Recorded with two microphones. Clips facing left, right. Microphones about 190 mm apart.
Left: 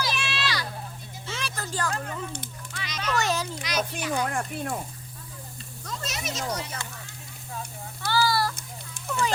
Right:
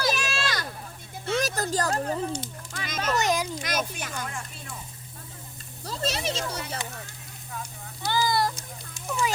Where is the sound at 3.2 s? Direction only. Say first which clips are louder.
Right 2 dB; 15° right (ahead or behind).